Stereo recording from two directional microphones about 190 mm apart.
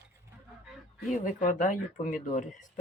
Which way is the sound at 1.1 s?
45° left (ahead or behind).